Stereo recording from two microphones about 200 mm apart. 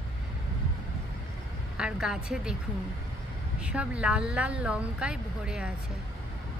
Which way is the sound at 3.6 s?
5° right (ahead or behind).